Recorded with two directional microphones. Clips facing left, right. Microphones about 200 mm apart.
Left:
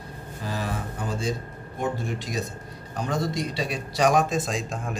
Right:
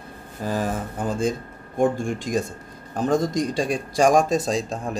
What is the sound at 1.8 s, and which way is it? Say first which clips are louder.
A man's voice: right 7 dB; 50° right (ahead or behind).